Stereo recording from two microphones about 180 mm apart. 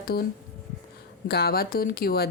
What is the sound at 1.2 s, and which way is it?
Speech, 65° left (ahead or behind).